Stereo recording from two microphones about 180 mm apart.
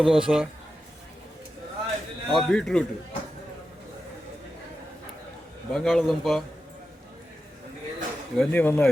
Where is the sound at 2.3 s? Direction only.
5° left (ahead or behind).